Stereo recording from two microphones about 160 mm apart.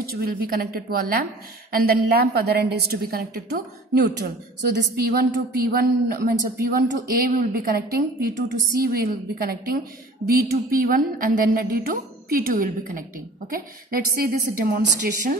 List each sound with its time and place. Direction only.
0.0 s a woman's voice: 65° right (ahead or behind)